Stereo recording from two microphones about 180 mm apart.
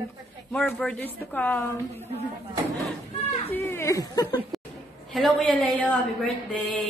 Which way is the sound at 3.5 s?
15° left (ahead or behind).